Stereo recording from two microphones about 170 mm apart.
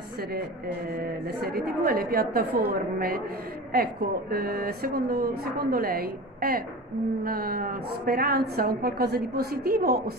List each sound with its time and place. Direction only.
1.2 s speech: 65° right (ahead or behind)